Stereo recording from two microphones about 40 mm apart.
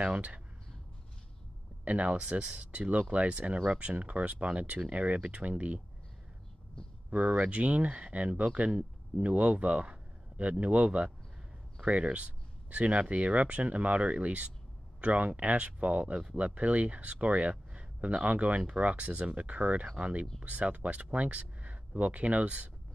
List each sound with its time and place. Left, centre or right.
0.0 s speech: right
1.9 s speech: right
2.1 s speech: right
7.1 s speech: right